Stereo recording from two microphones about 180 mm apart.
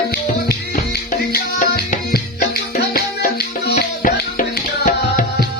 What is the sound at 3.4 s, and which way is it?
Music, 60° left (ahead or behind).